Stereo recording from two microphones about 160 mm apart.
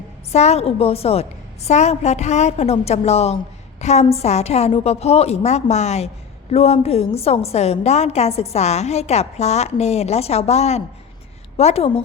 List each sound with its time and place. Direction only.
0.3 s a woman's voice: 40° left (ahead or behind)